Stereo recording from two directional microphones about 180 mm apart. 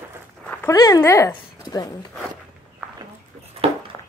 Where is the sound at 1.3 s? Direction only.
20° left (ahead or behind).